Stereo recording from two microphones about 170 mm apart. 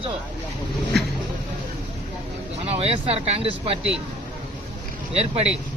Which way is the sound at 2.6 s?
35° right (ahead or behind).